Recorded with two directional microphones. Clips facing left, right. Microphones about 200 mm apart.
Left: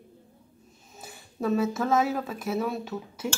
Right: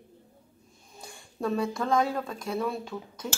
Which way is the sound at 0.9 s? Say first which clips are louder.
Left 2 dB; 5° left (ahead or behind).